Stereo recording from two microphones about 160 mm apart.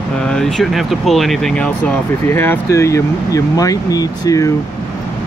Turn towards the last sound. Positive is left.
turn(degrees=20)  # may be behind; listen again after turning